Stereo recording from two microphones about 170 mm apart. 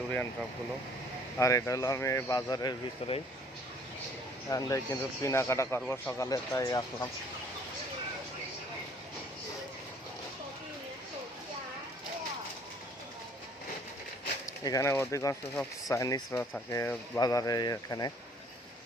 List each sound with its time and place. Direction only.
1.4 s speech: 15° left (ahead or behind)
3.0 s speech: 35° left (ahead or behind)
4.4 s a man's voice: 15° left (ahead or behind)
14.4 s speech: 20° left (ahead or behind)